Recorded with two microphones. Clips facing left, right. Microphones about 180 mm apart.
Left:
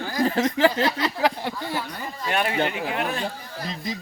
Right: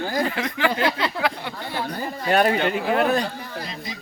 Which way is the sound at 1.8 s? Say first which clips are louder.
Right 5 dB; 35° right (ahead or behind).